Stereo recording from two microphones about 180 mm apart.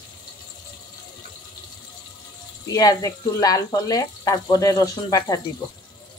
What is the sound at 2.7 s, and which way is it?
Speech, 20° left (ahead or behind).